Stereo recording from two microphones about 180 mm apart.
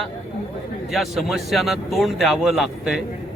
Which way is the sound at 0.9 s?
Centre (ahead or behind).